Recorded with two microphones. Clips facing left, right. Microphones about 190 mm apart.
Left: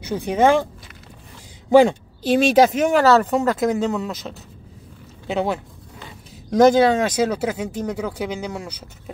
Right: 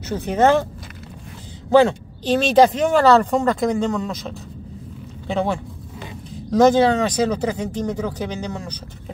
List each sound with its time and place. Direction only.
0.0 s speech: 15° left (ahead or behind)
1.7 s speech: 15° left (ahead or behind)